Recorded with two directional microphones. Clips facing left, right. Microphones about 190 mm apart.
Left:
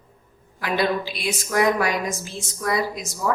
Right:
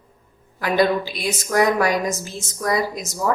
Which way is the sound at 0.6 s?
40° right (ahead or behind).